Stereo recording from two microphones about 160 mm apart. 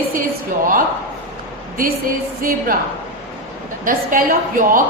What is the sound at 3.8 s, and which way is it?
A woman's voice, 60° right (ahead or behind).